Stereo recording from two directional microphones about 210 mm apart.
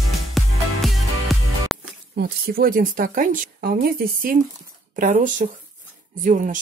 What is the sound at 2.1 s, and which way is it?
A woman's voice, 45° right (ahead or behind).